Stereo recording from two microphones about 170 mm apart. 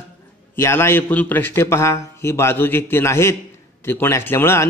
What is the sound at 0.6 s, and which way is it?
Speech, 15° left (ahead or behind).